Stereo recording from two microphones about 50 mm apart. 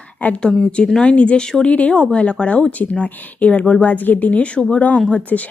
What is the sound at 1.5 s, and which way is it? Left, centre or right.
Speech, centre.